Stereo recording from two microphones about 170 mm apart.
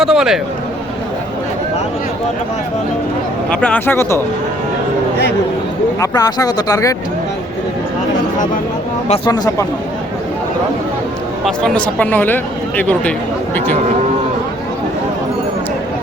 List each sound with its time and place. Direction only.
0.0 s speech: 5° right (ahead or behind)
3.5 s speech: 5° left (ahead or behind)
6.0 s speech: 20° left (ahead or behind)
9.0 s speech: 35° left (ahead or behind)
9.3 s speech: 20° left (ahead or behind)
11.4 s speech: 5° left (ahead or behind)